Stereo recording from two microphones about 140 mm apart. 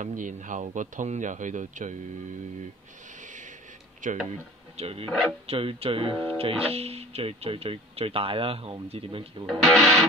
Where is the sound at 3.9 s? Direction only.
65° right (ahead or behind).